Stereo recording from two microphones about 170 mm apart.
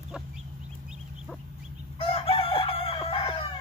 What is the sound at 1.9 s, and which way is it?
Chicken, 35° left (ahead or behind).